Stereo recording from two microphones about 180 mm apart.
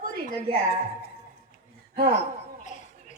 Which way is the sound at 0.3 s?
65° left (ahead or behind).